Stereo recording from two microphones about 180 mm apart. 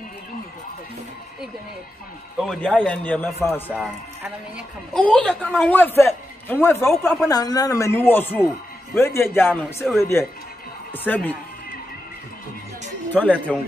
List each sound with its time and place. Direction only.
2.3 s a man's voice: centre (ahead or behind)
4.9 s a man's voice: 5° left (ahead or behind)
13.1 s a man's voice: 10° left (ahead or behind)